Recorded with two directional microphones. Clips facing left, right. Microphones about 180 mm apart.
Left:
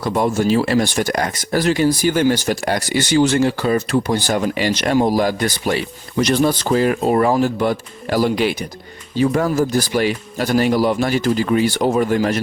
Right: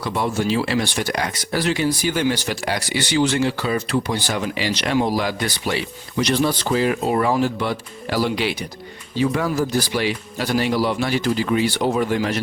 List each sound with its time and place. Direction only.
0.0 s speech: 45° left (ahead or behind)